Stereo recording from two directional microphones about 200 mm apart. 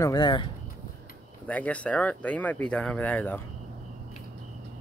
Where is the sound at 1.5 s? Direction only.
5° left (ahead or behind).